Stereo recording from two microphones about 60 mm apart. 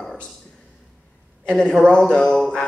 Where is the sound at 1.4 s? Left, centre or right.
Centre.